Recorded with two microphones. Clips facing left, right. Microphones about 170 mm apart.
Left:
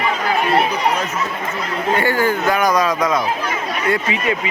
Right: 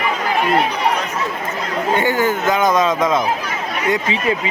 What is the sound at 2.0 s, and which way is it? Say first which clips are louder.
Speech: even; 20° right (ahead or behind).